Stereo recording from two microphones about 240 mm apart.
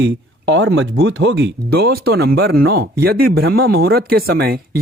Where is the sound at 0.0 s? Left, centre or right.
Right.